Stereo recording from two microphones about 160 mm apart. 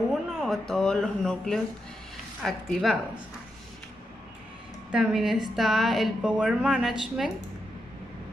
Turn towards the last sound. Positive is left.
turn(degrees=0)  # may be behind; listen again after turning